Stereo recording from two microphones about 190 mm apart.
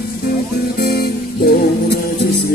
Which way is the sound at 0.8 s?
55° left (ahead or behind).